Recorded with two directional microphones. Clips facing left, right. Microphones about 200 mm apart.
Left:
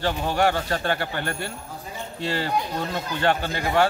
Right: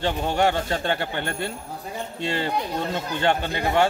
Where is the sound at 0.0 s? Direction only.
20° right (ahead or behind).